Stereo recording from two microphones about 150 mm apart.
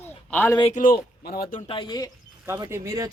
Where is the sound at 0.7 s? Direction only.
60° left (ahead or behind); by 1.6 s 90° left.